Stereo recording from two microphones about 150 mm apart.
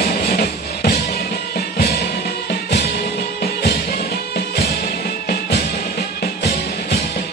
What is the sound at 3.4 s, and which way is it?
Music, 90° left.